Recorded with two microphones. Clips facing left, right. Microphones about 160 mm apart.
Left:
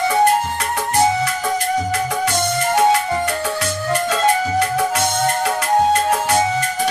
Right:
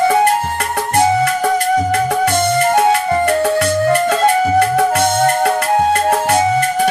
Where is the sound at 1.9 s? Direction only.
55° right (ahead or behind).